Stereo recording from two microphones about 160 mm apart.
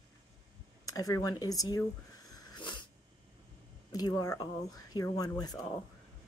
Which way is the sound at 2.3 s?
30° left (ahead or behind).